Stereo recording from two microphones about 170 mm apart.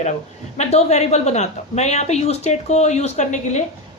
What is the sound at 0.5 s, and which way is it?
A woman's voice, 40° left (ahead or behind).